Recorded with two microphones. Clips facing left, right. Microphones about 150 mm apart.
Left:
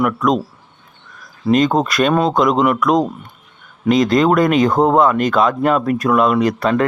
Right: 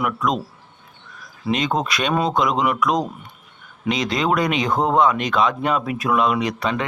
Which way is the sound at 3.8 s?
50° left (ahead or behind).